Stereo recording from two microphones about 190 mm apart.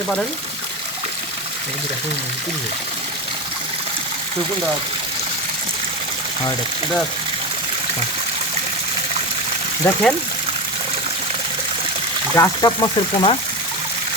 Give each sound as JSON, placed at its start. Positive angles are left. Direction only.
{"t": 9.8, "sound": "speech", "side_deg": 5}
{"t": 12.4, "sound": "speech", "side_deg": 20}